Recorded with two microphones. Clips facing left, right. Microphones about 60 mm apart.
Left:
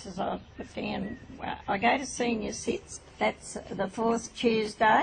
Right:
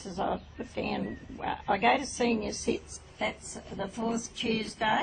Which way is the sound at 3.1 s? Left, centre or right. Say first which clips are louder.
Left 5 dB; left.